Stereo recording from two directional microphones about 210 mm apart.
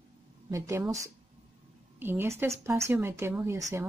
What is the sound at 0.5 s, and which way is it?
Speech, 15° right (ahead or behind).